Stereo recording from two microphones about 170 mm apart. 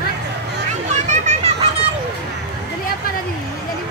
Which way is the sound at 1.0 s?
45° right (ahead or behind).